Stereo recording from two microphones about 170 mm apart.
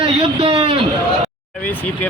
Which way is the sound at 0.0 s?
30° right (ahead or behind).